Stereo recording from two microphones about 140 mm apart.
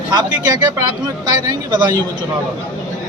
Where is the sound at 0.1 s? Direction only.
30° right (ahead or behind).